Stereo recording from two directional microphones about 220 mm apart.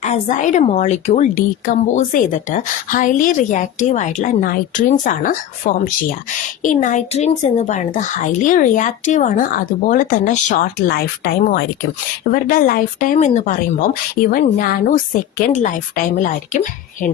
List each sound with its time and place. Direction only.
0.0 s a woman's voice: 30° left (ahead or behind)
16.1 s a woman's voice: 35° left (ahead or behind)